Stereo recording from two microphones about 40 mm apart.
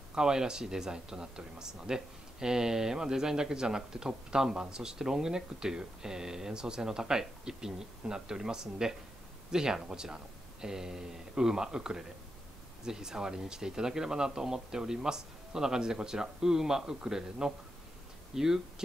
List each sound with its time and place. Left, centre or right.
0.1 s speech: centre